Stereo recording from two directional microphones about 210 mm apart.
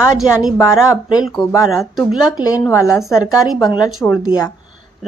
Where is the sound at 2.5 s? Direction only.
15° left (ahead or behind).